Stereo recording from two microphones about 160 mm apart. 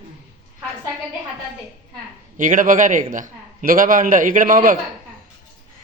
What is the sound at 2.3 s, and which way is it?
A man's voice, 55° right (ahead or behind).